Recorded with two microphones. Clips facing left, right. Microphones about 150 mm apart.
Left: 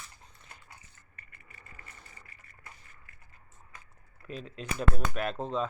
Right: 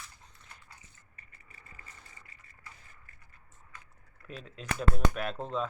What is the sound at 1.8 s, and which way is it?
Sewing machine, 30° left (ahead or behind).